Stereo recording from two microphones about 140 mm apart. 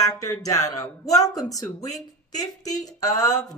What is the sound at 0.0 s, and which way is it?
A man's voice, 25° left (ahead or behind).